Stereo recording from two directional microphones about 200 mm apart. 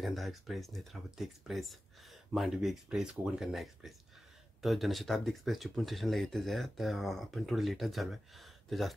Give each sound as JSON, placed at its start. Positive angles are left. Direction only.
{"t": 0.0, "sound": "speech", "side_deg": 0}